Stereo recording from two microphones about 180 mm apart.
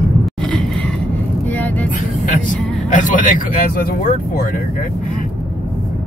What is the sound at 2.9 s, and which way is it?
Speech, 45° left (ahead or behind).